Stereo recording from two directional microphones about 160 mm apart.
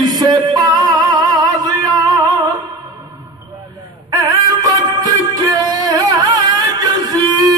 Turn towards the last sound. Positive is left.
turn(degrees=-25)  # may be behind; listen again after turning